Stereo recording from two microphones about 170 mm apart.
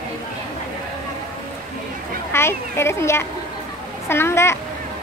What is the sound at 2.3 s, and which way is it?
A child's voice, 15° left (ahead or behind).